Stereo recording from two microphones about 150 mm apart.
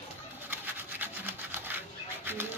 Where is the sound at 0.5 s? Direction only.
15° right (ahead or behind).